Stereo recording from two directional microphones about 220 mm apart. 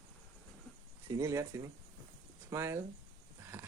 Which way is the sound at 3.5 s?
10° right (ahead or behind).